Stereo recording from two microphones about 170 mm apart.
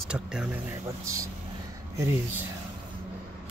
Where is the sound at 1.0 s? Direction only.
20° right (ahead or behind).